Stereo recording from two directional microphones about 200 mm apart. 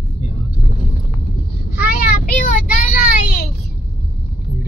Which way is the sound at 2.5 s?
45° left (ahead or behind).